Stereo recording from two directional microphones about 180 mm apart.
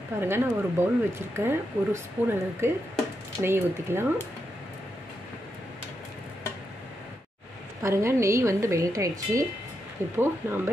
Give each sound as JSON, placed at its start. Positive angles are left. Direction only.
{"t": 0.2, "sound": "speech", "side_deg": -15}
{"t": 7.8, "sound": "speech", "side_deg": -15}